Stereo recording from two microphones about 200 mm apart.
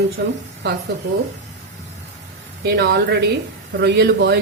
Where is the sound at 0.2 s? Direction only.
60° right (ahead or behind).